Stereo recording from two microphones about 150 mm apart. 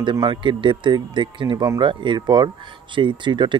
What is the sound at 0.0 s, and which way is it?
Speech, 30° right (ahead or behind).